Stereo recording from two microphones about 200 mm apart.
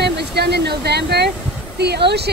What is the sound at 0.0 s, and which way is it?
A woman's voice, 55° right (ahead or behind).